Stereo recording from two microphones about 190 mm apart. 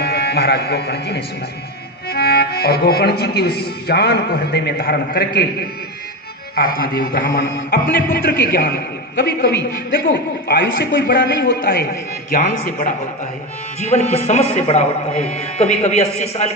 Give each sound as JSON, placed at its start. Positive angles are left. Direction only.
{"t": 0.0, "sound": "speech", "side_deg": 60}
{"t": 6.6, "sound": "speech", "side_deg": 50}
{"t": 8.3, "sound": "speech", "side_deg": 55}
{"t": 12.3, "sound": "speech", "side_deg": 50}
{"t": 13.8, "sound": "speech", "side_deg": 35}